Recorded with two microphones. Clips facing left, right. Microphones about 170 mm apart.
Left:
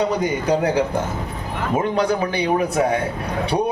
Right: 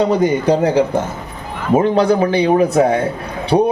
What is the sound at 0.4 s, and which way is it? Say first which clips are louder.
A man's voice: right 5 dB; 25° right (ahead or behind).